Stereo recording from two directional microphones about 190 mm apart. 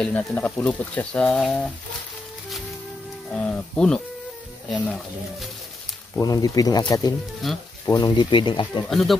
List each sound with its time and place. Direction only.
0.0 s speech: 5° left (ahead or behind)
3.3 s speech: 5° left (ahead or behind)
6.1 s speech: 20° left (ahead or behind)
7.4 s speech: centre (ahead or behind)
7.9 s speech: 20° left (ahead or behind)
8.8 s speech: centre (ahead or behind)